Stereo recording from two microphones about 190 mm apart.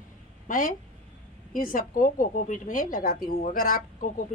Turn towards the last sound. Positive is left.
turn(degrees=45)  # may be behind; listen again after turning